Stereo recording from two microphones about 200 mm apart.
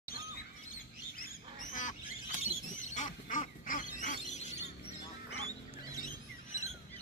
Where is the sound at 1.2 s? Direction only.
40° left (ahead or behind).